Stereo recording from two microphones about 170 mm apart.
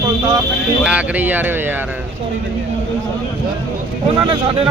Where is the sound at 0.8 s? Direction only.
10° right (ahead or behind).